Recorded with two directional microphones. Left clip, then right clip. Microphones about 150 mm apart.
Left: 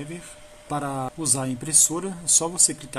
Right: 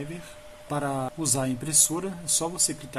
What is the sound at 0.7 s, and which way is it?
A man's voice, 15° left (ahead or behind).